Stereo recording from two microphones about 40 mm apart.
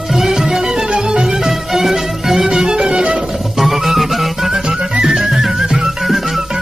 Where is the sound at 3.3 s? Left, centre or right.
Centre.